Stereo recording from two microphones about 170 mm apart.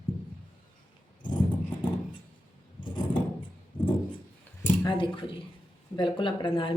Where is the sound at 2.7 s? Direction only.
25° left (ahead or behind).